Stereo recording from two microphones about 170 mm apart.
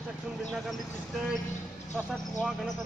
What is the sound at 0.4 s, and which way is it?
Speech, centre (ahead or behind).